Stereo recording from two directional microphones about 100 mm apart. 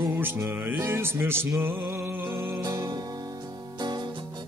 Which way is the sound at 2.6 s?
40° right (ahead or behind).